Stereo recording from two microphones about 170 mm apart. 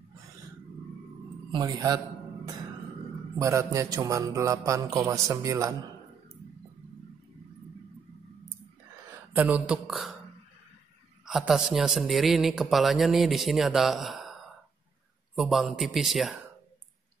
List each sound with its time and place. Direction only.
1.5 s a man's voice: 25° right (ahead or behind)
3.3 s a man's voice: 20° right (ahead or behind)
9.3 s speech: 10° right (ahead or behind)
11.2 s speech: centre (ahead or behind)